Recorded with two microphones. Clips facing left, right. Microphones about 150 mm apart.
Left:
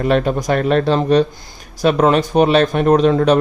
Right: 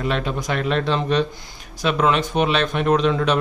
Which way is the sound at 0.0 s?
45° left (ahead or behind).